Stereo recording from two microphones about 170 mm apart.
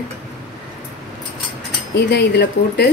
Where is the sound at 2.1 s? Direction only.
80° left.